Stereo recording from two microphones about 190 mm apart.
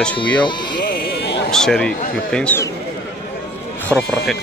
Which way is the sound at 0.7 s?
65° left (ahead or behind).